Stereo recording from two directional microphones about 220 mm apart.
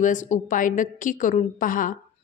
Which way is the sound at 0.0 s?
35° left (ahead or behind).